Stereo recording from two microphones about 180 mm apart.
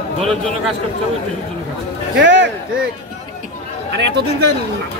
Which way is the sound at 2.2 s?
85° right.